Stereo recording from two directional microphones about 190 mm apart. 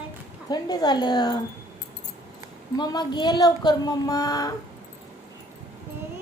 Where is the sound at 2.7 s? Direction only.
20° left (ahead or behind).